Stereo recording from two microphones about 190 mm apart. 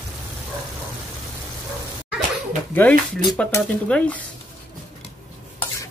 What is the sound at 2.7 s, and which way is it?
Speech, 5° left (ahead or behind).